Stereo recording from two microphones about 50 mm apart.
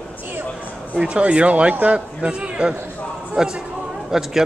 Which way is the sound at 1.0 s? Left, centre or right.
Right.